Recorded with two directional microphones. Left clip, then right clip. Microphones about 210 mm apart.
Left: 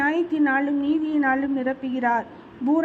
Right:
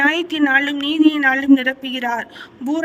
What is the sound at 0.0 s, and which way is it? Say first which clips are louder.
Speech: right 5 dB; 50° right (ahead or behind).